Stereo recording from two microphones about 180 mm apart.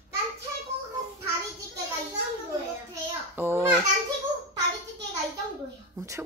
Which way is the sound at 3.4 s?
15° right (ahead or behind).